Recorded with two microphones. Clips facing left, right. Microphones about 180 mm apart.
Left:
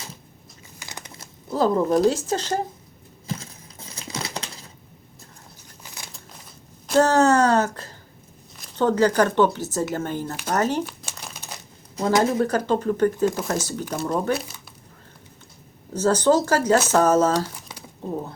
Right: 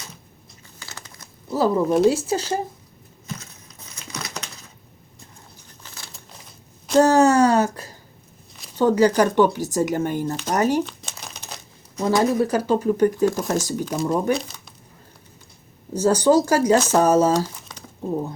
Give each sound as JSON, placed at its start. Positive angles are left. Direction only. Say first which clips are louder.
{"t": 0.8, "sound": "crumpling", "louder": "left 2 dB", "side_deg": 15}
{"t": 1.5, "sound": "speech", "louder": "right 1 dB", "side_deg": -5}
{"t": 3.2, "sound": "crumpling", "louder": "left 3 dB", "side_deg": 30}
{"t": 5.8, "sound": "a sound", "louder": "left 1 dB", "side_deg": 15}
{"t": 6.9, "sound": "speech", "louder": "right 2 dB", "side_deg": -10}
{"t": 10.8, "sound": "crumpling", "louder": "left 1 dB", "side_deg": 10}
{"t": 12.2, "sound": "speech", "louder": "right 2 dB", "side_deg": -10}
{"t": 15.9, "sound": "speech", "louder": "right 2 dB", "side_deg": -10}
{"t": 17.7, "sound": "a sound", "louder": "left 1 dB", "side_deg": 10}